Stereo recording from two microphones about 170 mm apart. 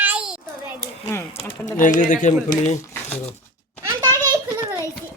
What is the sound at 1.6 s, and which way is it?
Speech, 50° left (ahead or behind).